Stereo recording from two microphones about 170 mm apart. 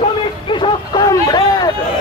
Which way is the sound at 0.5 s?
25° left (ahead or behind).